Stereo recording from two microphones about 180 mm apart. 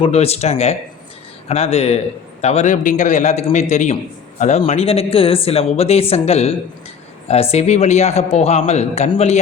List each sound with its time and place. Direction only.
0.0 s speech: 35° left (ahead or behind)